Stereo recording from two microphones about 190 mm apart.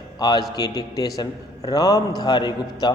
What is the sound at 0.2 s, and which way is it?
A man's voice, 20° left (ahead or behind).